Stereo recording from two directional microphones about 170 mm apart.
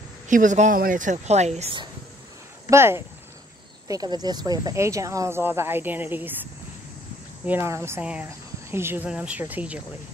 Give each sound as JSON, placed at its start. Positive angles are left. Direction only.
{"t": 0.3, "sound": "speech", "side_deg": -50}
{"t": 2.7, "sound": "speech", "side_deg": -15}